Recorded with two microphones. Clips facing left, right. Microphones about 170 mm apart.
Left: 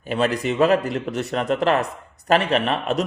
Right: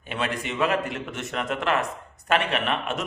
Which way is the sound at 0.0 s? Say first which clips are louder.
Left 8 dB; 35° left (ahead or behind).